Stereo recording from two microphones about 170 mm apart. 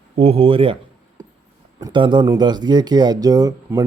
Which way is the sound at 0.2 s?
35° right (ahead or behind).